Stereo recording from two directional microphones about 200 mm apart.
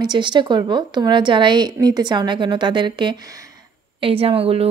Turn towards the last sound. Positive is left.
turn(degrees=-30)  # may be behind; listen again after turning